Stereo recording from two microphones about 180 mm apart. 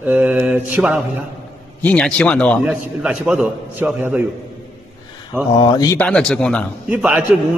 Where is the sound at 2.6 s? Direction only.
5° right (ahead or behind).